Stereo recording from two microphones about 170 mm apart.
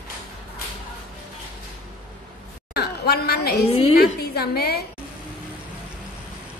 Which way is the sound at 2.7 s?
65° left (ahead or behind).